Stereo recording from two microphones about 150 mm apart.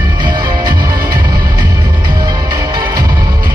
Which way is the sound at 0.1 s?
30° right (ahead or behind).